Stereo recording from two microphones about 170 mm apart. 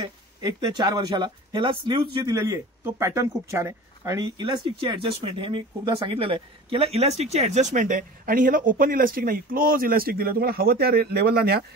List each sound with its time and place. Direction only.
0.0 s speech: 25° right (ahead or behind); by 11.6 s 70° right (ahead or behind)